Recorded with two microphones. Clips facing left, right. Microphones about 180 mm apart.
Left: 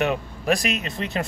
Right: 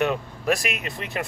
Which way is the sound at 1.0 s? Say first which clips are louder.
Left 5 dB; 30° left (ahead or behind).